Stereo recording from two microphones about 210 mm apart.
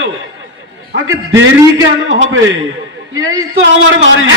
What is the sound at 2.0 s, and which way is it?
Speech, 65° right (ahead or behind).